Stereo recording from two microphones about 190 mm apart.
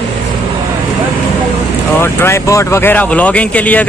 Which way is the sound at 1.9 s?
15° left (ahead or behind).